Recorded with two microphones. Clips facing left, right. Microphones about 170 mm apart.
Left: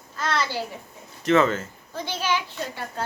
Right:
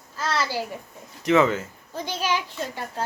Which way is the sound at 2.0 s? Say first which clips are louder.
Even; 40° right (ahead or behind).